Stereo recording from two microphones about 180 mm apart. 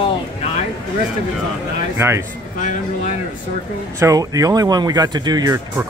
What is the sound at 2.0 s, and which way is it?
Speech, 15° right (ahead or behind).